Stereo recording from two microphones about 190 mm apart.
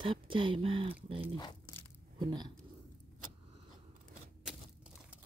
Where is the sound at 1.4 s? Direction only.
20° left (ahead or behind).